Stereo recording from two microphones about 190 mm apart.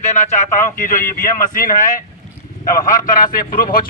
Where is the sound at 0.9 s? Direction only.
15° left (ahead or behind).